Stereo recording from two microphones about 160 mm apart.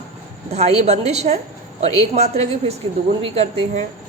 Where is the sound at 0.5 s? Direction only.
40° right (ahead or behind).